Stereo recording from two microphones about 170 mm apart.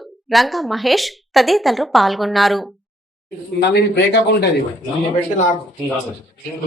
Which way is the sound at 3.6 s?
80° left.